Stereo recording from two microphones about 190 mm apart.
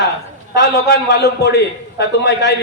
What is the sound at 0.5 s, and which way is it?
A man's voice, 60° left (ahead or behind).